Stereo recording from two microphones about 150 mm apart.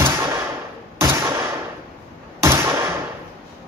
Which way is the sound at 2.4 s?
20° right (ahead or behind).